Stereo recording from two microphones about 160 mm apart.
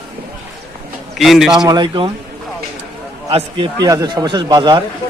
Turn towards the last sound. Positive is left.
turn(degrees=-25)  # may be behind; listen again after turning